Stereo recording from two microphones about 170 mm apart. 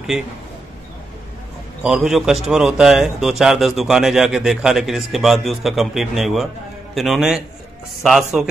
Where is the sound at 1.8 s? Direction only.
5° right (ahead or behind).